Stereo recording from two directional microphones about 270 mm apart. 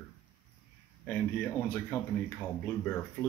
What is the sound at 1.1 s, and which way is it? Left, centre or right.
Speech, centre.